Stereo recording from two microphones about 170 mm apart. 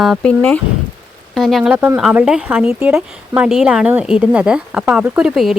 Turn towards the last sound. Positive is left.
turn(degrees=-5)  # may be behind; listen again after turning